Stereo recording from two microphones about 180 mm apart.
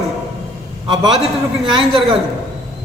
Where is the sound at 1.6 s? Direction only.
25° right (ahead or behind).